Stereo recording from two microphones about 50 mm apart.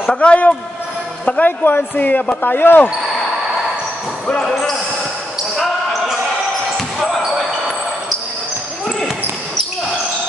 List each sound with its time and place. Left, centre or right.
0.2 s a man's voice: left
1.4 s speech: left
4.4 s speech: centre